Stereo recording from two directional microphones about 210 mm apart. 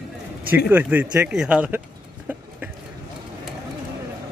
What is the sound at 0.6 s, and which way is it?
Speech, 10° right (ahead or behind).